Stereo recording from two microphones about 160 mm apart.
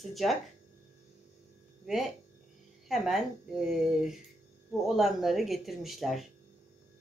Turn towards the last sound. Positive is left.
turn(degrees=0)  # may be behind; listen again after turning